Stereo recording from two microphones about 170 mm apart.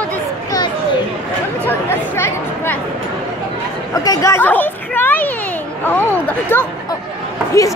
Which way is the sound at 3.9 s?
20° left (ahead or behind).